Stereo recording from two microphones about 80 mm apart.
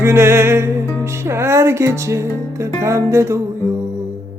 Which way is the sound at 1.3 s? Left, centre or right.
Right.